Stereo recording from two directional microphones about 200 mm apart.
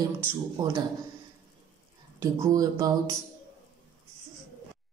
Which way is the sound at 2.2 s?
15° right (ahead or behind).